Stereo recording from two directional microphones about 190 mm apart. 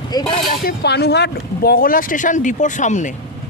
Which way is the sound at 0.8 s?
60° left (ahead or behind).